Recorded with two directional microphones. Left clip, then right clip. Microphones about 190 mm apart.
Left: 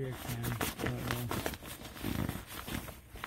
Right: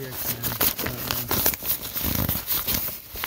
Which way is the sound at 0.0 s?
40° right (ahead or behind).